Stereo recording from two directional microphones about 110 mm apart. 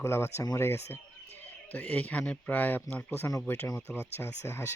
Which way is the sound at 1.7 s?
15° left (ahead or behind).